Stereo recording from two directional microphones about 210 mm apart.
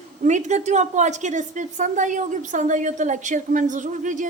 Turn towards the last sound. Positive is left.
turn(degrees=-35)  # may be behind; listen again after turning